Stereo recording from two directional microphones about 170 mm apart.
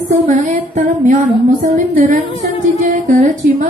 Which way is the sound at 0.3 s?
50° right (ahead or behind).